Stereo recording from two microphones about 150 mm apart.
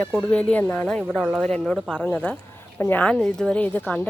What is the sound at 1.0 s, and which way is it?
A woman's voice, centre (ahead or behind).